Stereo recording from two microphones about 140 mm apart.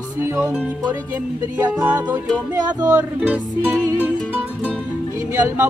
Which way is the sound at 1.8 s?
10° right (ahead or behind).